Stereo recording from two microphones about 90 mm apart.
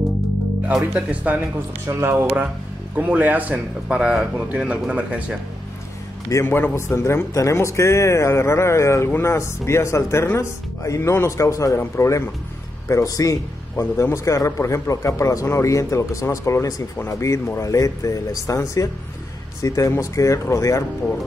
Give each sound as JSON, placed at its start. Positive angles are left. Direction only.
{"t": 0.9, "sound": "speech", "side_deg": -15}
{"t": 1.9, "sound": "speech", "side_deg": -30}
{"t": 3.0, "sound": "speech", "side_deg": -15}
{"t": 6.4, "sound": "a man's voice", "side_deg": 25}